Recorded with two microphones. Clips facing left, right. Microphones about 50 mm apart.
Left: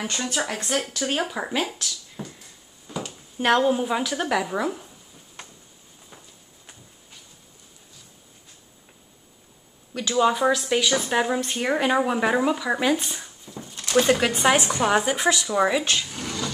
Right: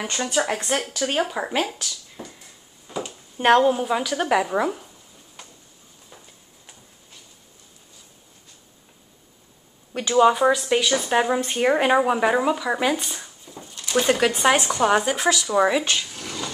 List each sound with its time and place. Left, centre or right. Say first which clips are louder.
0.0 s a woman's voice: right 3 dB; centre
2.9 s a sound: right 2 dB; right
3.6 s a woman's voice: right 2 dB; centre
4.3 s speech: right 6 dB; centre
9.9 s speech: right 4 dB; right
10.2 s a woman's voice: right 3 dB; centre
16.3 s wood: left 2 dB; centre